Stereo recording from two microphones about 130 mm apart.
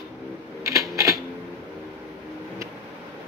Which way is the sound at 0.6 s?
25° right (ahead or behind).